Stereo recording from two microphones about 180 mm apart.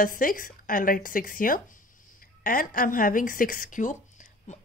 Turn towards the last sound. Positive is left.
turn(degrees=45)  # may be behind; listen again after turning